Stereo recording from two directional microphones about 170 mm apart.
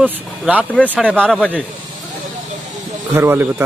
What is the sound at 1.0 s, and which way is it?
Speech, 5° left (ahead or behind).